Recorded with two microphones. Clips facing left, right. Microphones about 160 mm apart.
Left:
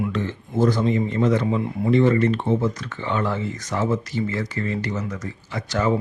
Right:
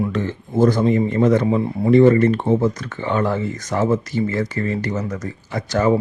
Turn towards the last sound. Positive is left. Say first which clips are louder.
# right 4 dB
turn(degrees=-45)  # may be behind; listen again after turning